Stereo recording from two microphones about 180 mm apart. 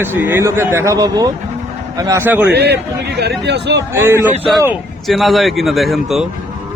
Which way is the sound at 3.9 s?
15° right (ahead or behind).